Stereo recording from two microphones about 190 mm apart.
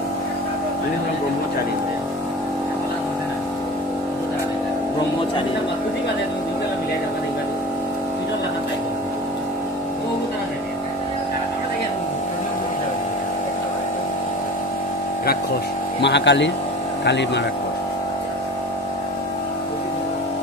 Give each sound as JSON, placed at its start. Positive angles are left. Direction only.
{"t": 16.0, "sound": "speech", "side_deg": 65}